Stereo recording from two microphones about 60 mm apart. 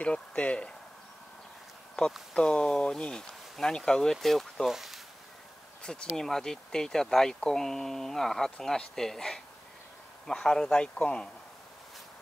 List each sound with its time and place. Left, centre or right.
0.0 s speech: centre
2.3 s speech: centre
5.8 s a sound: centre
6.1 s speech: centre